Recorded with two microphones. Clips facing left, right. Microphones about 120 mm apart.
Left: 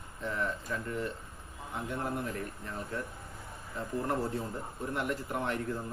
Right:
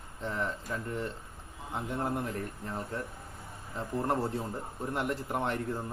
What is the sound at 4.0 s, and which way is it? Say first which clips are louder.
Speech: right 2 dB; 30° right (ahead or behind).